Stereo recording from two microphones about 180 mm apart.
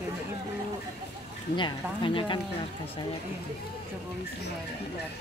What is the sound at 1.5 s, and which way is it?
Speech, 25° left (ahead or behind).